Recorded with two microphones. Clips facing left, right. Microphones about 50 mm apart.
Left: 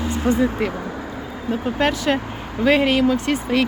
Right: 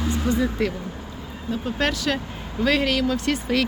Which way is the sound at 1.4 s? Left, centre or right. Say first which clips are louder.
Left 4 dB; left.